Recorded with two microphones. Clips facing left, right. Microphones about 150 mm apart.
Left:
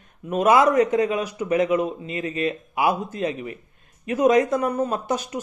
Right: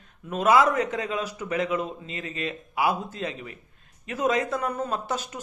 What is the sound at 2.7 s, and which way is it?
A man's voice, 15° left (ahead or behind).